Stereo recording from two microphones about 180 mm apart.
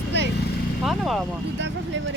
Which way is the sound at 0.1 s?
75° right (ahead or behind).